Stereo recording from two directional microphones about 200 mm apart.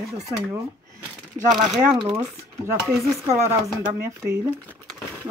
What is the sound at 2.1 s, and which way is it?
Speech, 10° right (ahead or behind).